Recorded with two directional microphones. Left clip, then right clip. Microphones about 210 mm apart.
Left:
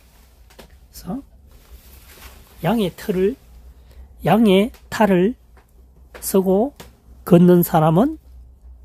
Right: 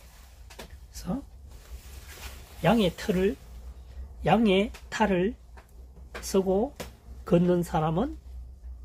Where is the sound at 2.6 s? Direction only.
55° left (ahead or behind).